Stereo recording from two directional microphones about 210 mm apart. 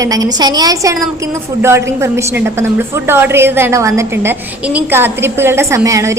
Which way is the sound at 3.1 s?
10° right (ahead or behind).